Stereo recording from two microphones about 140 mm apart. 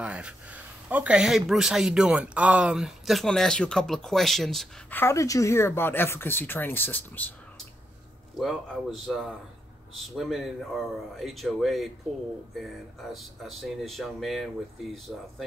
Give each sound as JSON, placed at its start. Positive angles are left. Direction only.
{"t": 0.0, "sound": "speech", "side_deg": -5}
{"t": 4.9, "sound": "speech", "side_deg": 20}
{"t": 8.4, "sound": "speech", "side_deg": 0}
{"t": 13.1, "sound": "speech", "side_deg": 0}